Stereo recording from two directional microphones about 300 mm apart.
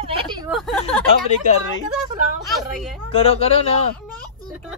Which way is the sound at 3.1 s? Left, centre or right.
Centre.